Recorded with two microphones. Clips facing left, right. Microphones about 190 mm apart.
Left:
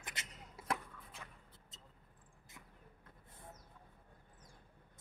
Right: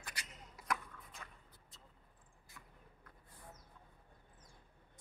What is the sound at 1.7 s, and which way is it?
Vehicle, 20° left (ahead or behind).